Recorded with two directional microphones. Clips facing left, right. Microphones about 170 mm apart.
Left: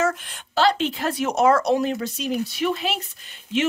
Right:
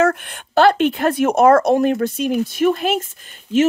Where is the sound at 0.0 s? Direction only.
55° right (ahead or behind).